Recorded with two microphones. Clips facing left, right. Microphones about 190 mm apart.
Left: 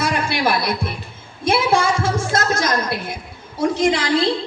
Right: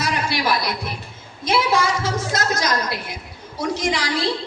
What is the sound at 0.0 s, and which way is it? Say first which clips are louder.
Music: left 3 dB; 55° left (ahead or behind).